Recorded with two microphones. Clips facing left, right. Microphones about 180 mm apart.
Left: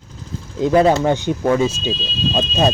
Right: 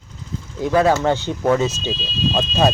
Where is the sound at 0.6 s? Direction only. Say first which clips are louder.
Left 3 dB; 20° left (ahead or behind).